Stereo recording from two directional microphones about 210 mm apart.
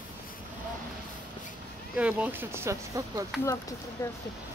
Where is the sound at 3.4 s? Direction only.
15° left (ahead or behind).